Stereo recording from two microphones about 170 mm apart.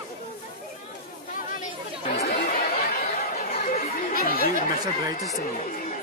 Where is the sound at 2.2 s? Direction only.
60° left (ahead or behind).